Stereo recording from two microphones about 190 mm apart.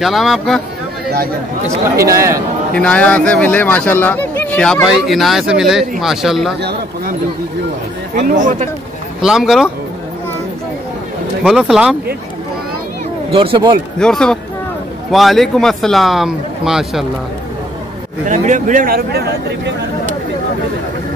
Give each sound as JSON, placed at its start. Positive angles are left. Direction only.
{"t": 0.0, "sound": "speech", "side_deg": 0}
{"t": 2.0, "sound": "a man's voice", "side_deg": -15}
{"t": 2.7, "sound": "speech", "side_deg": 5}
{"t": 8.1, "sound": "a man's voice", "side_deg": -50}
{"t": 9.2, "sound": "speech", "side_deg": 0}
{"t": 11.4, "sound": "speech", "side_deg": -5}
{"t": 13.3, "sound": "speech", "side_deg": -30}
{"t": 13.9, "sound": "speech", "side_deg": 5}
{"t": 18.2, "sound": "a man's voice", "side_deg": -40}